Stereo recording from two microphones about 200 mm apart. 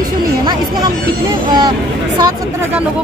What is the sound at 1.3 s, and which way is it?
Speech, 20° right (ahead or behind).